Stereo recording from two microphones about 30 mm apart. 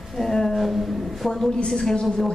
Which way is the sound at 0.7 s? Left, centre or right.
Centre.